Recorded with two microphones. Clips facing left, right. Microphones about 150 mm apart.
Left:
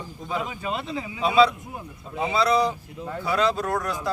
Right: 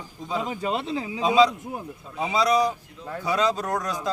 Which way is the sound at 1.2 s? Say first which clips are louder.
Even; 15° right (ahead or behind).